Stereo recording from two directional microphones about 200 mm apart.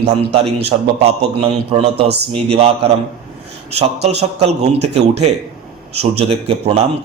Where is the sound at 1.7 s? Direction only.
30° right (ahead or behind).